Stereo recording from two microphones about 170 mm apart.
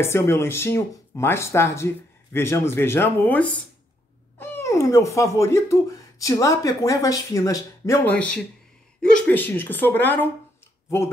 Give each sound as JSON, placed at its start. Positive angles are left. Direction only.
{"t": 0.0, "sound": "speech", "side_deg": 15}